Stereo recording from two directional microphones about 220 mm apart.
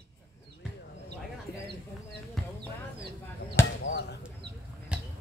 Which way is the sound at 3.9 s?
50° left (ahead or behind).